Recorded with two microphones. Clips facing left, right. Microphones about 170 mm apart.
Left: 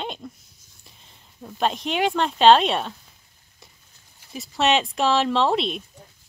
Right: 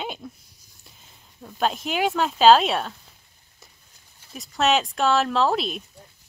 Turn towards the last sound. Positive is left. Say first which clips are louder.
# left 1 dB
turn(degrees=0)  # may be behind; listen again after turning